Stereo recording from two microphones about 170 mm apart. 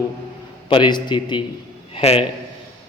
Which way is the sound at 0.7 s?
25° left (ahead or behind).